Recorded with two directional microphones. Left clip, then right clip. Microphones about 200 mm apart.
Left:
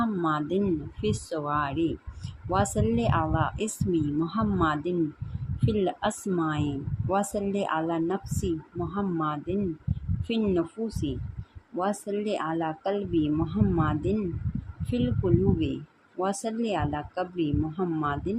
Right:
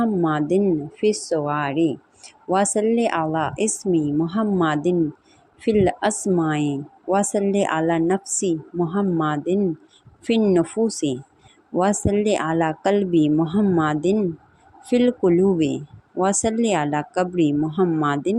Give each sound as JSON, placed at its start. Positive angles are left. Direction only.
{"t": 0.0, "sound": "speech", "side_deg": -25}